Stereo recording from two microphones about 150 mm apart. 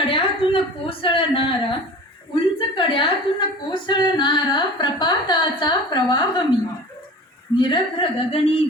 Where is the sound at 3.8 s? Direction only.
30° left (ahead or behind).